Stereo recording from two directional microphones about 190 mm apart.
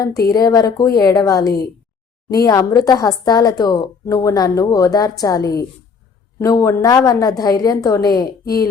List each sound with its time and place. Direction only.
0.3 s a woman's voice: 20° left (ahead or behind)